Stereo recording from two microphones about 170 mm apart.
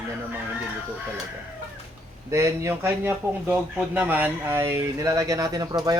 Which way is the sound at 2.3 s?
15° right (ahead or behind).